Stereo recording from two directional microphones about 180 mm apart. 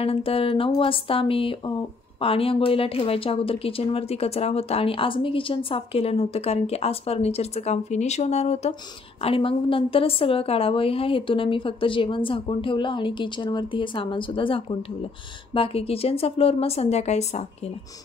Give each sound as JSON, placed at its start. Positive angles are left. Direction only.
{"t": 0.0, "sound": "a woman's voice", "side_deg": 30}